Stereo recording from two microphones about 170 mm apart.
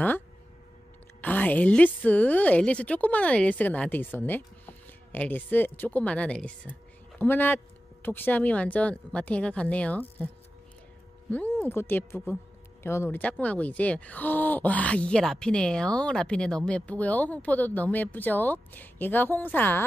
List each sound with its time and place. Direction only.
1.2 s a woman's voice: 10° left (ahead or behind)